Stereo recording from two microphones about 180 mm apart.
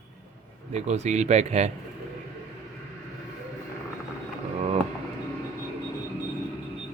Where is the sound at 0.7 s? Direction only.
40° right (ahead or behind).